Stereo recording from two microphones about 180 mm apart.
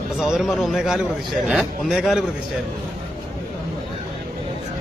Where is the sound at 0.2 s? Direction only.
5° right (ahead or behind).